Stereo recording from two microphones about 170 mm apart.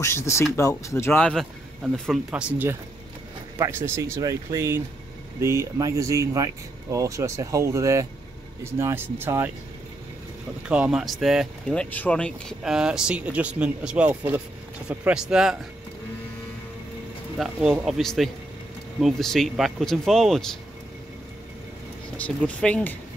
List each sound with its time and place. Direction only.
0.0 s speech: 15° left (ahead or behind); by 9.5 s 15° right (ahead or behind)
10.7 s speech: 5° right (ahead or behind)
17.4 s speech: 5° right (ahead or behind)
22.1 s speech: 10° left (ahead or behind)